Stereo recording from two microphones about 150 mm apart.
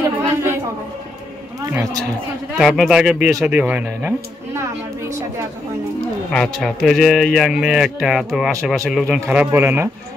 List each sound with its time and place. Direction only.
0.2 s a sound: 20° right (ahead or behind)
1.7 s a man's voice: 20° right (ahead or behind)
2.5 s speech: centre (ahead or behind)
6.3 s speech: 5° left (ahead or behind)
9.0 s speech: 10° right (ahead or behind)